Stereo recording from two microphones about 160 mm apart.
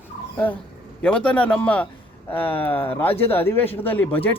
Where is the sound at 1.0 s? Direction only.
10° left (ahead or behind).